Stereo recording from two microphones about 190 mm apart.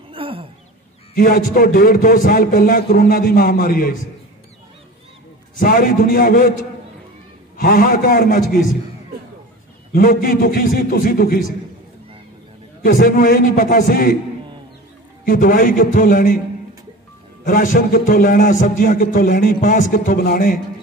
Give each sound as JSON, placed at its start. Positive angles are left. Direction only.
{"t": 0.1, "sound": "a sound", "side_deg": -30}
{"t": 1.1, "sound": "a man's voice", "side_deg": 45}
{"t": 5.6, "sound": "a man's voice", "side_deg": 45}
{"t": 7.5, "sound": "a man's voice", "side_deg": 50}
{"t": 9.9, "sound": "a man's voice", "side_deg": 50}
{"t": 12.8, "sound": "a man's voice", "side_deg": 50}
{"t": 15.2, "sound": "a man's voice", "side_deg": 45}
{"t": 17.5, "sound": "a man's voice", "side_deg": 45}